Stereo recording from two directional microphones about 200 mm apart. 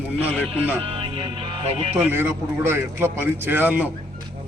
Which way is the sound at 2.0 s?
10° right (ahead or behind).